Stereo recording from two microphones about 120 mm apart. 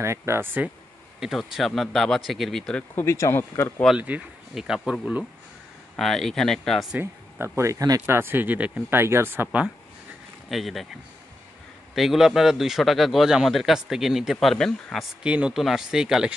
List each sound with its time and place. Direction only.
0.0 s speech: 20° right (ahead or behind)
1.2 s a man's voice: centre (ahead or behind)
3.0 s speech: 25° left (ahead or behind)
4.0 s a man's voice: 10° right (ahead or behind)
5.9 s a man's voice: centre (ahead or behind)
7.0 s speech: 20° right (ahead or behind)
8.2 s speech: 15° right (ahead or behind)
10.5 s a man's voice: centre (ahead or behind)
15.2 s a man's voice: 10° right (ahead or behind)